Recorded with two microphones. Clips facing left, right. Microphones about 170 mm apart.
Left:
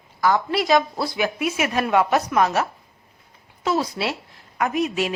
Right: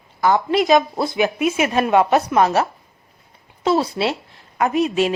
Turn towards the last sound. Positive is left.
turn(degrees=-30)  # may be behind; listen again after turning